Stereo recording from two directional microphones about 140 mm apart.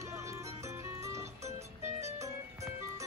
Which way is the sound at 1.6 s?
50° right (ahead or behind).